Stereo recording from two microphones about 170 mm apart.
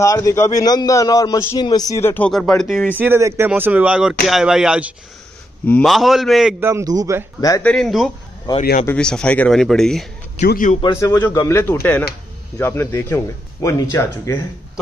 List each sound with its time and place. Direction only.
0.0 s a man's voice: 20° left (ahead or behind); by 2.9 s centre (ahead or behind)
3.0 s speech: 15° right (ahead or behind)
6.6 s speech: 15° right (ahead or behind)
7.3 s speech: 20° left (ahead or behind)
7.6 s speech: centre (ahead or behind)
10.5 s speech: 50° left (ahead or behind)
10.8 s a man's voice: 20° left (ahead or behind)